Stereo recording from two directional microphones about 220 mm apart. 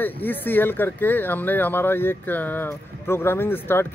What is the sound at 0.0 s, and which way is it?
Speech, 10° left (ahead or behind).